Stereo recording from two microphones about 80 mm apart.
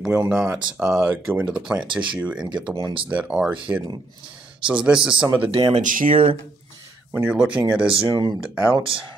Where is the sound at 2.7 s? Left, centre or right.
Right.